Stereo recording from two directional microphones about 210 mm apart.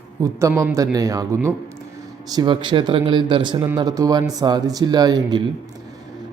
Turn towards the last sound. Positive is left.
turn(degrees=-20)  # may be behind; listen again after turning